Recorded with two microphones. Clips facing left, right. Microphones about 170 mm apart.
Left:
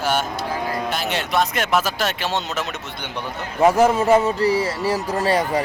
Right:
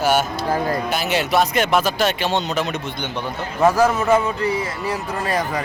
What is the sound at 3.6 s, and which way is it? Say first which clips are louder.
A man's voice: left 1 dB; 25° left (ahead or behind).